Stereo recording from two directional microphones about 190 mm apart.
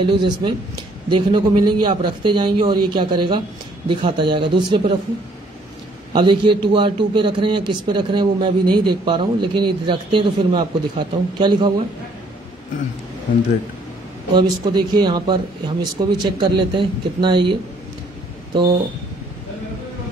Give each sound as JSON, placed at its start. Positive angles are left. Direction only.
{"t": 0.1, "sound": "a man's voice", "side_deg": -25}
{"t": 6.1, "sound": "a man's voice", "side_deg": -25}
{"t": 14.3, "sound": "a man's voice", "side_deg": -20}